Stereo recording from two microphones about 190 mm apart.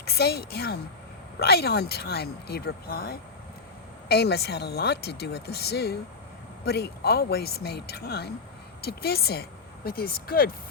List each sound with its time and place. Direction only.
0.0 s a woman's voice: 55° left (ahead or behind)